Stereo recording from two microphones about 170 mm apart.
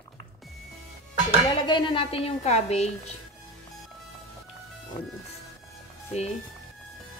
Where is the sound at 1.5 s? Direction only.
25° left (ahead or behind).